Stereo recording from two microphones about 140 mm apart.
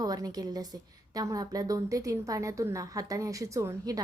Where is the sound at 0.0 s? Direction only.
25° right (ahead or behind).